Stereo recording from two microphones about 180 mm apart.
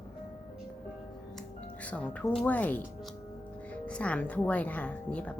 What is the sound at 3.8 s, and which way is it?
Speech, 5° left (ahead or behind).